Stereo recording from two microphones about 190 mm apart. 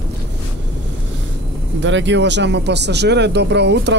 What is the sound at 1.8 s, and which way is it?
Speech, 75° right (ahead or behind).